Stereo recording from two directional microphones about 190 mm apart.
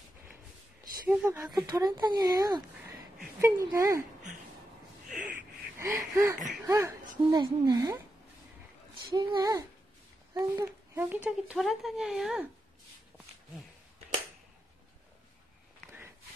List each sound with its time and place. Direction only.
1.0 s a child's voice: 10° right (ahead or behind)
1.5 s a child's voice: 20° right (ahead or behind)
5.8 s gasp: 15° right (ahead or behind)
6.7 s a child's voice: 15° right (ahead or behind)
9.1 s a child's voice: 20° right (ahead or behind); by 12.4 s 5° right (ahead or behind)